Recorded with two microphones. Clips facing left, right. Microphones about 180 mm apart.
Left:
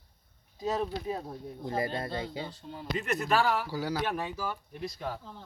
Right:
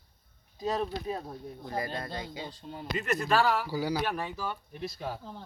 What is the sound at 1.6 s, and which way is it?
Speech, 25° left (ahead or behind).